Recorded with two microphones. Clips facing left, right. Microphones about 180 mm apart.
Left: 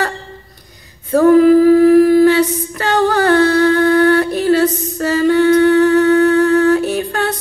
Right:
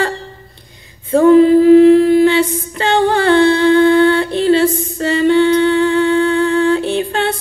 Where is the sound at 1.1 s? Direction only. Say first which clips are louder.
Right 1 dB; 25° right (ahead or behind).